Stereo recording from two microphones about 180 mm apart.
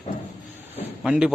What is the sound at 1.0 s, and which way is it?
Speech, 5° right (ahead or behind).